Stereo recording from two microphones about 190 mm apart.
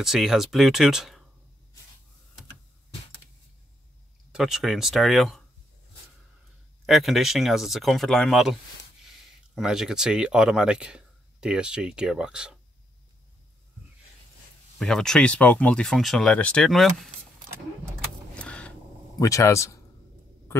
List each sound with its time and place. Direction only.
0.0 s speech: centre (ahead or behind)
4.3 s speech: 5° right (ahead or behind)
6.9 s speech: centre (ahead or behind)
14.8 s speech: 5° left (ahead or behind)
18.3 s a sound: 5° left (ahead or behind)
19.1 s speech: 15° left (ahead or behind)